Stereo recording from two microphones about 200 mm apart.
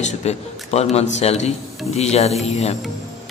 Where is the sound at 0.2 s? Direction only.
35° left (ahead or behind).